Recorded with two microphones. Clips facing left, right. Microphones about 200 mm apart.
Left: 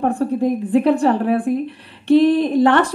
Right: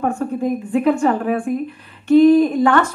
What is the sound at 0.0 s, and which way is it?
A woman's voice, 35° left (ahead or behind).